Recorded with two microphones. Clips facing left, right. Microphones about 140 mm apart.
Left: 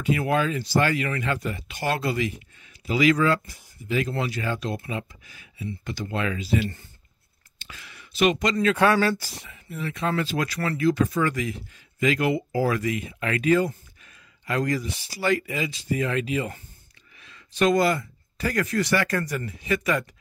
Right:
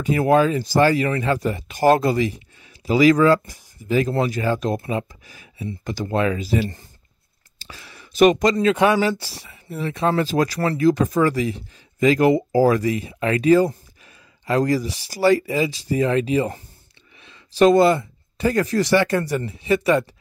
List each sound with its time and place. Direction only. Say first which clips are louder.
0.0 s speech: right 7 dB; 40° right (ahead or behind)
8.7 s speech: right 3 dB; 15° right (ahead or behind)
9.2 s speech: right 2 dB; 35° right (ahead or behind)